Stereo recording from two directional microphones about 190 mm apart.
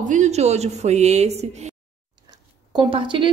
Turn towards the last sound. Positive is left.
turn(degrees=-25)  # may be behind; listen again after turning